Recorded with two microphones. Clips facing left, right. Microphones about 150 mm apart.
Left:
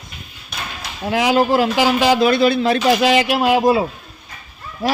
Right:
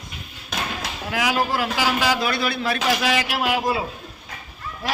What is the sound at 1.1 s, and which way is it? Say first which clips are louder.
A man's voice: left 8 dB; 25° left (ahead or behind).